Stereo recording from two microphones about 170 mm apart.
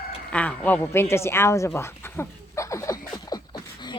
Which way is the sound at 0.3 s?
10° left (ahead or behind).